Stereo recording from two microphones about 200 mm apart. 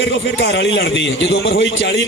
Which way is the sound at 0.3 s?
60° left (ahead or behind).